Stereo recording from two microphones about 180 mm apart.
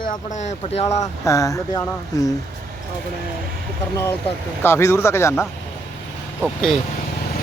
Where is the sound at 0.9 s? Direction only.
15° left (ahead or behind).